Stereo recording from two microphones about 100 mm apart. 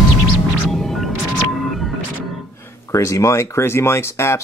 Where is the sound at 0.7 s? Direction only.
Centre (ahead or behind).